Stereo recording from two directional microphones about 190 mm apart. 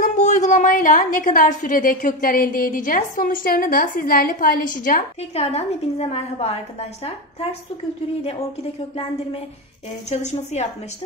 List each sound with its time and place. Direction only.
0.0 s a woman's voice: 40° left (ahead or behind)
5.3 s a woman's voice: 35° left (ahead or behind)
8.9 s a woman's voice: 30° left (ahead or behind)